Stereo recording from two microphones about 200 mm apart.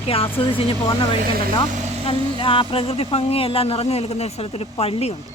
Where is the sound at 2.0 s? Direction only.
25° left (ahead or behind).